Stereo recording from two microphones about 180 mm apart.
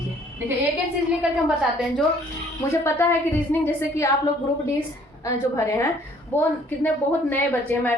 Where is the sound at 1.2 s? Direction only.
5° right (ahead or behind).